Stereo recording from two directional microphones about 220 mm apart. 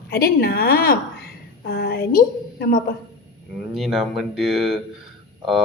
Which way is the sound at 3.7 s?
Centre (ahead or behind).